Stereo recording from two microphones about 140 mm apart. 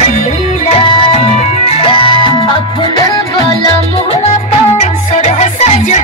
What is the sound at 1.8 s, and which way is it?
Music, 40° left (ahead or behind).